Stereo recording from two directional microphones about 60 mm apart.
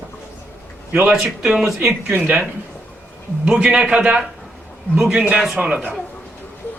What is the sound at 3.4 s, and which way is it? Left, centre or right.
A man's voice, centre.